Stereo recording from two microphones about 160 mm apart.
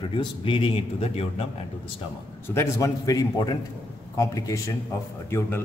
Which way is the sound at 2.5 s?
15° left (ahead or behind).